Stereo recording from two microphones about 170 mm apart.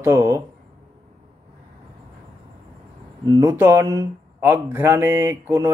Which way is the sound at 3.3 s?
15° right (ahead or behind).